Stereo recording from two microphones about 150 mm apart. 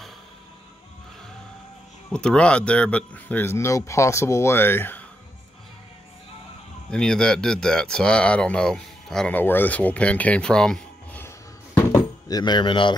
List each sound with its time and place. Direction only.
2.0 s speech: 5° left (ahead or behind)
6.9 s speech: 5° left (ahead or behind)
11.2 s a sound: 15° left (ahead or behind)
12.4 s speech: 30° left (ahead or behind)